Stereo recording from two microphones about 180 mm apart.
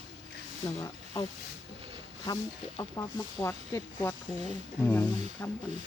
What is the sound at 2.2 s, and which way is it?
Speech, 20° left (ahead or behind).